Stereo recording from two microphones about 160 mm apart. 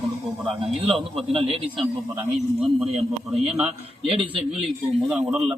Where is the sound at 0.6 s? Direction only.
35° right (ahead or behind).